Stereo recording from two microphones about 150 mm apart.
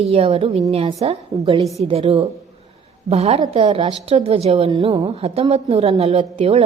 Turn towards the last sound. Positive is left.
turn(degrees=-40)  # may be behind; listen again after turning